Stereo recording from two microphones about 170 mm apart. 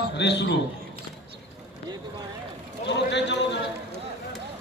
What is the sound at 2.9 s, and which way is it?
Speech, 90° left.